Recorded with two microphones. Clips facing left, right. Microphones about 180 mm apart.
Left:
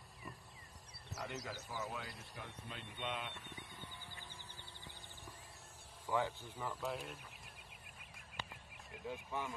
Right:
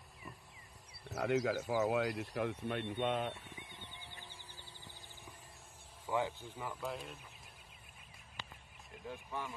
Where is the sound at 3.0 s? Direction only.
45° right (ahead or behind).